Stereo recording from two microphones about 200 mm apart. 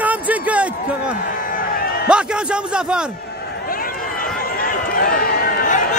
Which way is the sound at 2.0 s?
5° right (ahead or behind).